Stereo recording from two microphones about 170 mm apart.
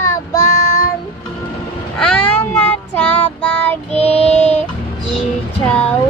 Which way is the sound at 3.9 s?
40° left (ahead or behind).